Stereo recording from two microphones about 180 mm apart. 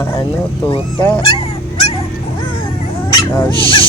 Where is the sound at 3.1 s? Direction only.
25° left (ahead or behind).